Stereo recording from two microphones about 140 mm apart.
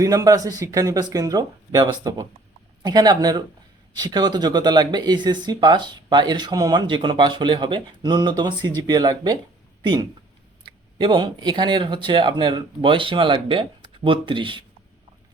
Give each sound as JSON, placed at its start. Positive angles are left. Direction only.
{"t": 0.0, "sound": "speech", "side_deg": -25}